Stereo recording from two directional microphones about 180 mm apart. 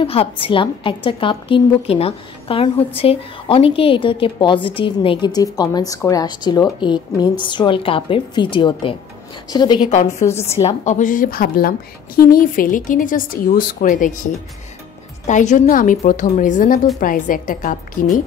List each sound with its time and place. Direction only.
0.0 s a woman's voice: 30° left (ahead or behind)
9.8 s a woman's voice: 40° left (ahead or behind)
15.2 s speech: 40° left (ahead or behind)